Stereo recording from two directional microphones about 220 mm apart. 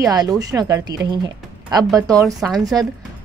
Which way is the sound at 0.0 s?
15° right (ahead or behind).